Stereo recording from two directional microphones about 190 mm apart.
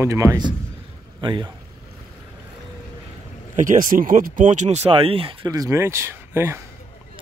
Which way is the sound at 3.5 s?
45° right (ahead or behind).